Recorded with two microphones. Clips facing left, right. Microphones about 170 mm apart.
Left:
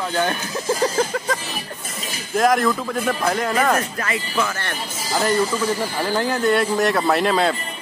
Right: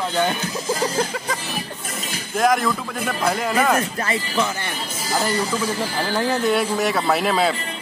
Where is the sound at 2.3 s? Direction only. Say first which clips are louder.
Left 2 dB; centre (ahead or behind).